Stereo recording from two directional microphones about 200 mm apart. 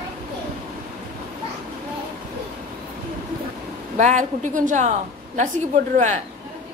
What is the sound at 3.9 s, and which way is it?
A woman's voice, 35° right (ahead or behind).